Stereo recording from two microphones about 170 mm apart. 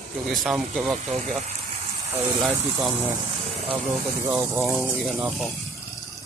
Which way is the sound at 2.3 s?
10° right (ahead or behind).